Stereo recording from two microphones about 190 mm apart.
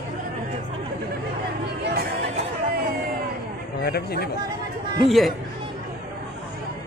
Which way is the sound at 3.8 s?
55° left (ahead or behind).